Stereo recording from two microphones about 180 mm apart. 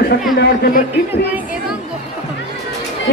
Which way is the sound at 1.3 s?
5° right (ahead or behind).